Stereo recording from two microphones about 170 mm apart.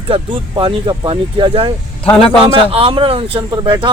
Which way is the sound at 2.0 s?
35° left (ahead or behind).